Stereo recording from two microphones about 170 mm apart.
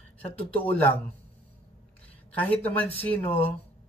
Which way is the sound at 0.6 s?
10° left (ahead or behind).